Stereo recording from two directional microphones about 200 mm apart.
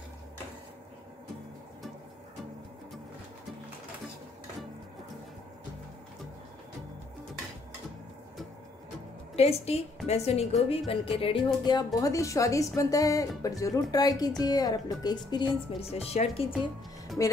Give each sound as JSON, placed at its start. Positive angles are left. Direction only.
{"t": 9.3, "sound": "a woman's voice", "side_deg": 30}
{"t": 17.2, "sound": "speech", "side_deg": 15}